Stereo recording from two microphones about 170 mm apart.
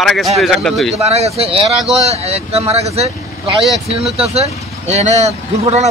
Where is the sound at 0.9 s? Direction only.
40° right (ahead or behind).